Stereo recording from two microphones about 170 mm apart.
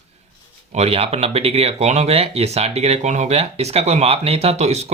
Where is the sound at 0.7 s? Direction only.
40° right (ahead or behind).